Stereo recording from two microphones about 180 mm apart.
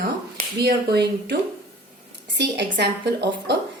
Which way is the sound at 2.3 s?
70° right (ahead or behind).